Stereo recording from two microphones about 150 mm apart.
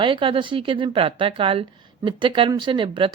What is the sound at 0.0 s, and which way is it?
A woman's voice, 35° right (ahead or behind).